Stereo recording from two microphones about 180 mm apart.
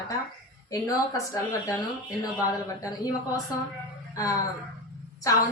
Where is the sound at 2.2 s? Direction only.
20° left (ahead or behind).